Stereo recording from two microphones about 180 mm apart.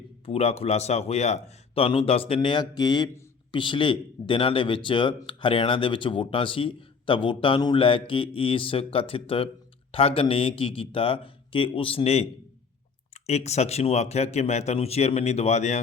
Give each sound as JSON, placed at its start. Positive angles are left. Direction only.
{"t": 0.3, "sound": "a man's voice", "side_deg": 35}
{"t": 13.2, "sound": "a man's voice", "side_deg": 35}